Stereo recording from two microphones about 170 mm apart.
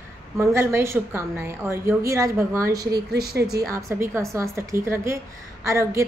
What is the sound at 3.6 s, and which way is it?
A woman's voice, 20° right (ahead or behind).